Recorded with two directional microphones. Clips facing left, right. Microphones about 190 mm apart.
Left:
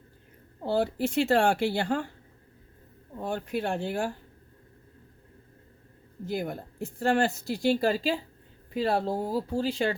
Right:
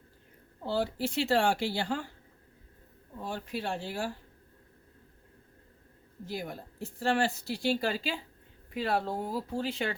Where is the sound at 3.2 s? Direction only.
55° left (ahead or behind).